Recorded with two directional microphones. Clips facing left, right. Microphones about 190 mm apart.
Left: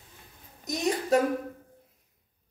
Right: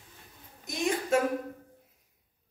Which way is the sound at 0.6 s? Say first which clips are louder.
Left 2 dB; 40° left (ahead or behind).